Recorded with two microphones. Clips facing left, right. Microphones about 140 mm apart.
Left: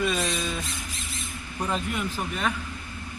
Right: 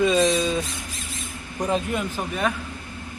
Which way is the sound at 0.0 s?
25° right (ahead or behind).